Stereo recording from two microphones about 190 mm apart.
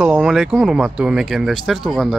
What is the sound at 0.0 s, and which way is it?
Speech, 5° right (ahead or behind).